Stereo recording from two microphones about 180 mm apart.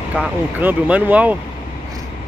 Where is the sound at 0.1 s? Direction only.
10° right (ahead or behind).